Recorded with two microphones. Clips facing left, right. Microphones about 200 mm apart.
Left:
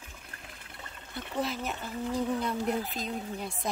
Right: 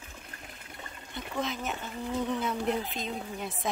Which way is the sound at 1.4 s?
Centre (ahead or behind).